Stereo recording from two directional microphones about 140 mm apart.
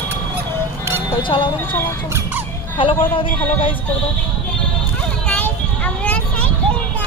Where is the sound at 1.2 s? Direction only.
35° left (ahead or behind).